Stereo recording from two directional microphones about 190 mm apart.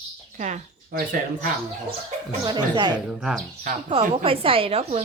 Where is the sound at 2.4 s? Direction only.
20° right (ahead or behind).